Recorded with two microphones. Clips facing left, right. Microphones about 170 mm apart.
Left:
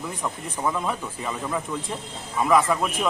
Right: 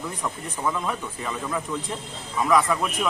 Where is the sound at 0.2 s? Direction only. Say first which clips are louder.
Left 2 dB; 5° left (ahead or behind).